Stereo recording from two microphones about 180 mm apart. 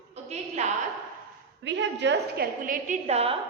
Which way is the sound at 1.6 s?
80° right.